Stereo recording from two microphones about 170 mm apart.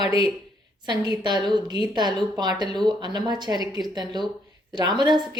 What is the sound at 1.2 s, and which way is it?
A woman's voice, 25° right (ahead or behind).